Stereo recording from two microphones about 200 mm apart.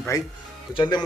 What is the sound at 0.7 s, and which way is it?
Speech, 20° left (ahead or behind).